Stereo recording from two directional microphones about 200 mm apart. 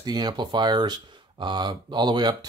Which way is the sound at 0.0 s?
20° right (ahead or behind).